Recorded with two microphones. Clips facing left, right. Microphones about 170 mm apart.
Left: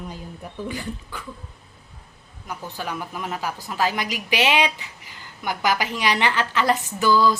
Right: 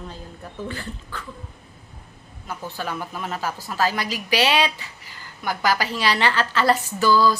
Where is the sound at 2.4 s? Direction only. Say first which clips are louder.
Right 1 dB; 15° left (ahead or behind).